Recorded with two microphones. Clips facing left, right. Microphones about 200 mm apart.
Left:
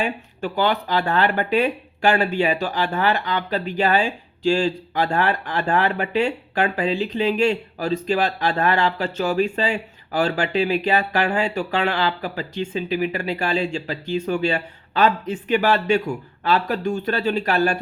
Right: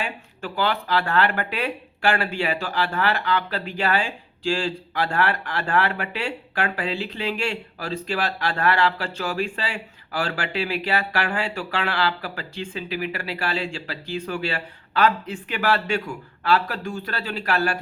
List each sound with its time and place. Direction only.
0.0 s speech: 20° left (ahead or behind)